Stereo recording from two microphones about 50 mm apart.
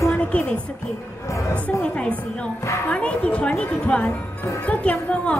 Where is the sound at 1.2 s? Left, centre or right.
Left.